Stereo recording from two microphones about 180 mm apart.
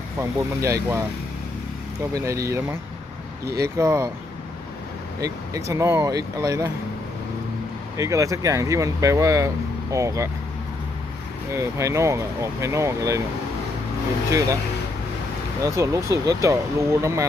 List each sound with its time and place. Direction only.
0.2 s speech: 15° right (ahead or behind)
2.1 s speech: 15° right (ahead or behind)
5.2 s speech: 15° right (ahead or behind)
8.0 s speech: 15° right (ahead or behind)
11.5 s speech: 15° right (ahead or behind)
15.6 s speech: 15° right (ahead or behind)